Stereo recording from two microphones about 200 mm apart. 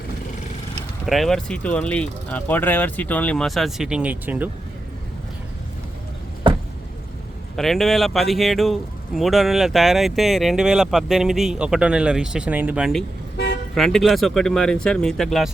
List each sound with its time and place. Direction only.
1.0 s speech: centre (ahead or behind)
6.5 s a sound: 25° right (ahead or behind)
7.5 s speech: centre (ahead or behind)
13.3 s toot: 55° left (ahead or behind)
13.7 s speech: centre (ahead or behind)